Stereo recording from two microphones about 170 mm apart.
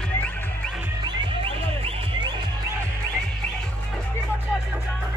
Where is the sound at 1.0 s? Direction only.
25° right (ahead or behind).